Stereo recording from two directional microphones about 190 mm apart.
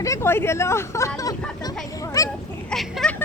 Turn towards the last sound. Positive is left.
turn(degrees=0)  # may be behind; listen again after turning